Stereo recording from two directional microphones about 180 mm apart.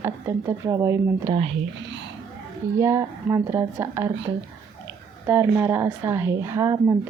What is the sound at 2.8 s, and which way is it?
Speech, 15° right (ahead or behind).